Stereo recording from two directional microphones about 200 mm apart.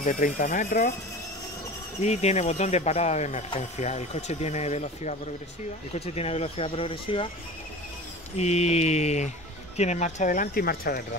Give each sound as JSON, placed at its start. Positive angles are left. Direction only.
{"t": 0.0, "sound": "speech", "side_deg": 40}
{"t": 2.0, "sound": "speech", "side_deg": 35}
{"t": 8.4, "sound": "speech", "side_deg": 35}